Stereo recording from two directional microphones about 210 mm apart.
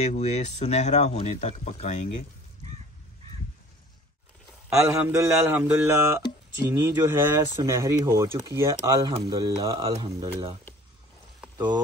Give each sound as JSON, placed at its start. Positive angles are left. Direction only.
{"t": 0.0, "sound": "speech", "side_deg": 30}
{"t": 4.7, "sound": "speech", "side_deg": -15}
{"t": 11.5, "sound": "frying", "side_deg": -20}